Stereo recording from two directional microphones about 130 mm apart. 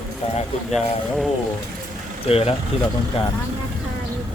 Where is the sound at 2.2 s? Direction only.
50° left (ahead or behind).